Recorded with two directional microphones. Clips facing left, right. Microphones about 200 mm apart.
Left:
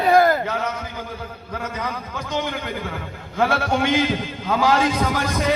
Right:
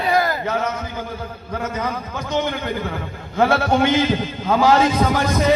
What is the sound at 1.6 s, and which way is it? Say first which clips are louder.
Speech: right 4 dB; 45° right (ahead or behind).